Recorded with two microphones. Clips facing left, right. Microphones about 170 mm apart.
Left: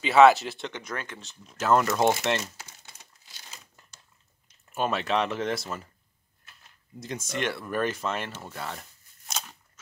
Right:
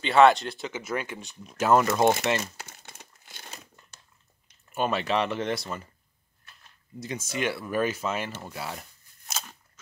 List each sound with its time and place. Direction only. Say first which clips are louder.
0.0 s speech: left 1 dB; 5° left (ahead or behind); by 1.8 s 15° right (ahead or behind)
1.8 s speech: right 1 dB; centre (ahead or behind)
2.4 s crumpling: right 2 dB; 55° right (ahead or behind)
4.7 s speech: even; centre (ahead or behind)
7.0 s speech: right 1 dB; centre (ahead or behind)
9.3 s scissors: left 1 dB; centre (ahead or behind)